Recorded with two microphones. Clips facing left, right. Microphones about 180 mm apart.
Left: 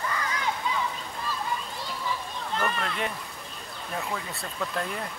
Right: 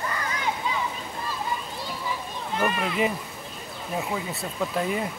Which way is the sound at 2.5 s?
10° right (ahead or behind).